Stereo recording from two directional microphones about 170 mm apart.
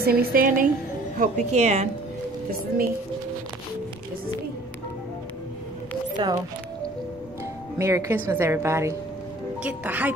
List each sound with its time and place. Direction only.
0.0 s a woman's voice: 65° right (ahead or behind)
1.1 s a woman's voice: 45° right (ahead or behind)
6.2 s speech: 30° right (ahead or behind)
7.8 s a woman's voice: 15° right (ahead or behind)